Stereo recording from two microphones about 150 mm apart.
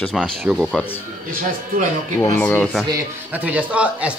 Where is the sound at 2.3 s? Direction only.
10° left (ahead or behind).